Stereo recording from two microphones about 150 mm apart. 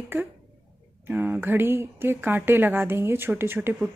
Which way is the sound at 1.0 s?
15° right (ahead or behind).